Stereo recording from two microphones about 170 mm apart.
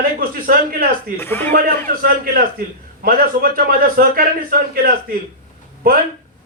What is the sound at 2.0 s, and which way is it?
A man's voice, 55° right (ahead or behind).